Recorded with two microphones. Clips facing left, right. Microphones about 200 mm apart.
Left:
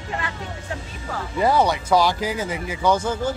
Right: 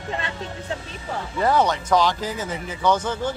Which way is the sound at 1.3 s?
10° left (ahead or behind).